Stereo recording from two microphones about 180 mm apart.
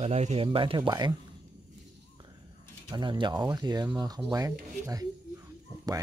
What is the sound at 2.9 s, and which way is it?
Speech, 25° right (ahead or behind).